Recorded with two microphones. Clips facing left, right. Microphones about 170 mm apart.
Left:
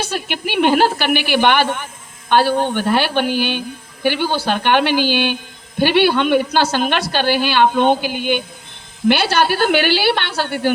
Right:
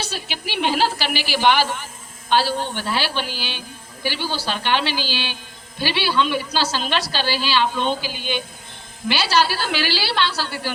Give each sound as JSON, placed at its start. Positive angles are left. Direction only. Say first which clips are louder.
{"t": 0.0, "sound": "a woman's voice", "louder": "left 7 dB", "side_deg": 55}